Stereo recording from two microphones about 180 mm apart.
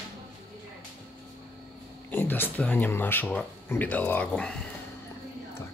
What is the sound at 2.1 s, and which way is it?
Speech, 10° left (ahead or behind).